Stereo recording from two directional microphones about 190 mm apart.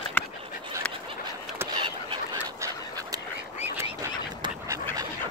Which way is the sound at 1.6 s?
10° right (ahead or behind).